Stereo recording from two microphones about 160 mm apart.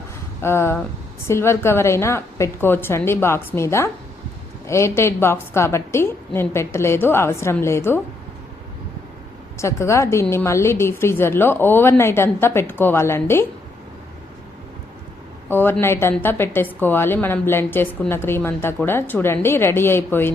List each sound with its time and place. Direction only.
0.4 s a woman's voice: 15° left (ahead or behind)
9.6 s a woman's voice: 20° left (ahead or behind)
15.4 s a woman's voice: 15° left (ahead or behind)